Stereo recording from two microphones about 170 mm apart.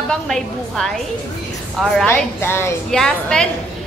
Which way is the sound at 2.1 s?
15° left (ahead or behind).